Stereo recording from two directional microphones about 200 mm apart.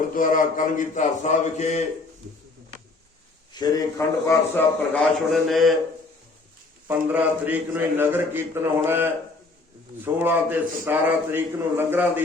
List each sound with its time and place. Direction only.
0.1 s a man's voice: 40° left (ahead or behind)
3.5 s a man's voice: 20° left (ahead or behind)
5.3 s speech: centre (ahead or behind)
6.8 s a man's voice: 10° right (ahead or behind)